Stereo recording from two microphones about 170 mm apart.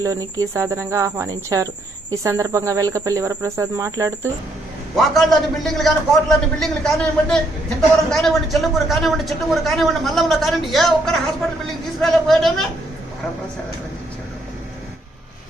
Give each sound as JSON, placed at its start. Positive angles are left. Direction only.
{"t": 0.0, "sound": "speech", "side_deg": -20}
{"t": 4.9, "sound": "speech", "side_deg": 0}